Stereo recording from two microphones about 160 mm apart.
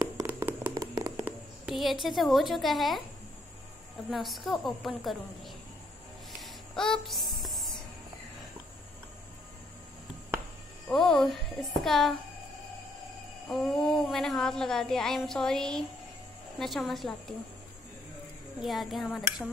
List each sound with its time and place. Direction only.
0.0 s a sound: 15° right (ahead or behind)
1.2 s a woman's voice: centre (ahead or behind)
4.1 s a woman's voice: centre (ahead or behind)
6.4 s a sound: 5° left (ahead or behind)
10.9 s a woman's voice: 5° left (ahead or behind)
13.5 s a woman's voice: centre (ahead or behind)
18.6 s a woman's voice: centre (ahead or behind)